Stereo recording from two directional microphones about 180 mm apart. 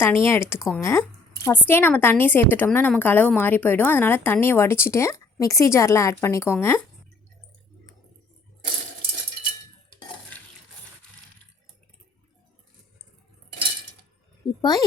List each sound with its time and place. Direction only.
0.0 s a woman's voice: 15° left (ahead or behind)
14.4 s speech: 20° left (ahead or behind)